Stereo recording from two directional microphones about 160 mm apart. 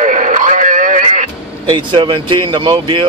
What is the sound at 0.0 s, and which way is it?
Radio, 50° right (ahead or behind).